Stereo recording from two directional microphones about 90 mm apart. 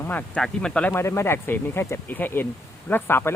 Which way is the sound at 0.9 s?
30° left (ahead or behind).